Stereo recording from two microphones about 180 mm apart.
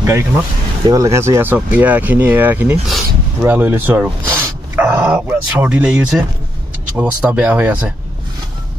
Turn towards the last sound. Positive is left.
turn(degrees=-10)  # may be behind; listen again after turning